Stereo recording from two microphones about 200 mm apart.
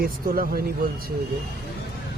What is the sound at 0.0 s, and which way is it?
Speech, 45° right (ahead or behind).